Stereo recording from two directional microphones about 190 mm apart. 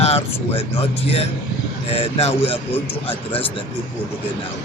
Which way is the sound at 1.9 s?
30° left (ahead or behind).